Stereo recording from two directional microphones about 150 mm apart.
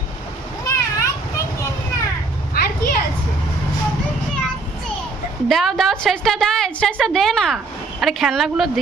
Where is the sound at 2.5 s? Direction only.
90° left.